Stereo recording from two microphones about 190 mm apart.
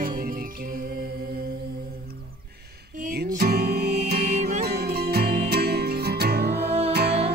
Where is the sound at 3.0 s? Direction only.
55° right (ahead or behind).